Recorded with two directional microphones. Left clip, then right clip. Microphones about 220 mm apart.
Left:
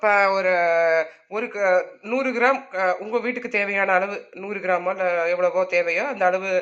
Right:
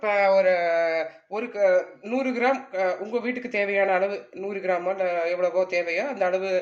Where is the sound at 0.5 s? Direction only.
10° left (ahead or behind).